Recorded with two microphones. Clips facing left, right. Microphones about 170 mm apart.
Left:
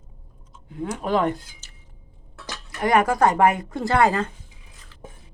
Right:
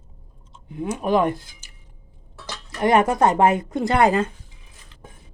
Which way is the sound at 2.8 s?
25° right (ahead or behind).